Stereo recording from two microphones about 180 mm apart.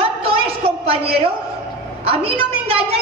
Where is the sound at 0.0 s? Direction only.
30° right (ahead or behind).